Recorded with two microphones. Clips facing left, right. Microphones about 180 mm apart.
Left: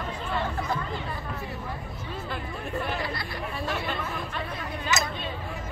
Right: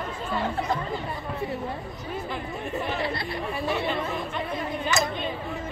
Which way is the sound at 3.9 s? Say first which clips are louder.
Right 4 dB; 20° right (ahead or behind).